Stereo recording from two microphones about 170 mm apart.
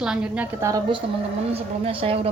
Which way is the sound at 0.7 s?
30° right (ahead or behind).